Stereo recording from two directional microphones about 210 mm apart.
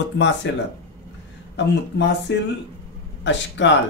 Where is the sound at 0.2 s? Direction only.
55° left (ahead or behind).